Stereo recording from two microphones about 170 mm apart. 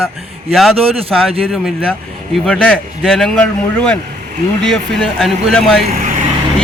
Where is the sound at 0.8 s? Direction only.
35° right (ahead or behind).